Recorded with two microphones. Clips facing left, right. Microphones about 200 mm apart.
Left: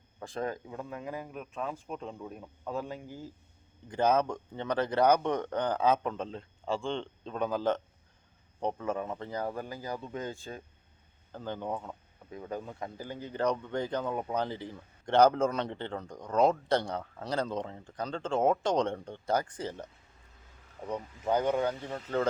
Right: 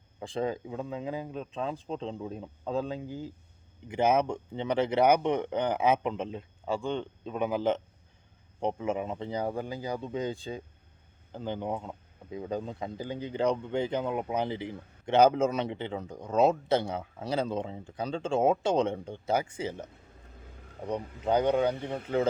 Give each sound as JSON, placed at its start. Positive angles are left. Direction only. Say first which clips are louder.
{"t": 0.2, "sound": "speech", "louder": "right 4 dB", "side_deg": -15}
{"t": 20.9, "sound": "speech", "louder": "right 3 dB", "side_deg": -15}